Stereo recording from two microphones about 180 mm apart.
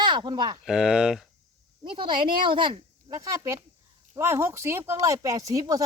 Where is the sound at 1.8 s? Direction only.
25° right (ahead or behind).